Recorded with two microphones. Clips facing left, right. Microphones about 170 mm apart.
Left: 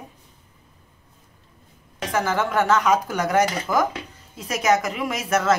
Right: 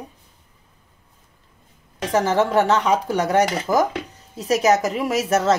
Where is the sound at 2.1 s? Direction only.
35° right (ahead or behind).